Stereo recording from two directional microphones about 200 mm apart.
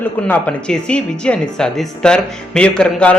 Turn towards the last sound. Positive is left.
turn(degrees=5)  # may be behind; listen again after turning